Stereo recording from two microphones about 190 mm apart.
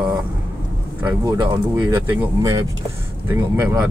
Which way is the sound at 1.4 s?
15° right (ahead or behind).